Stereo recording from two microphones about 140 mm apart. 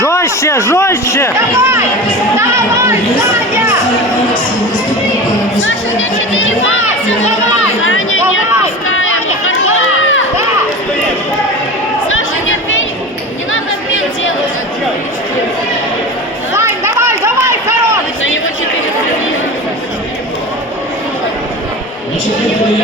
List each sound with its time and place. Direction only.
0.0 s a man's voice: 20° left (ahead or behind)
1.4 s speech: 20° right (ahead or behind)
16.6 s a sound: 20° right (ahead or behind)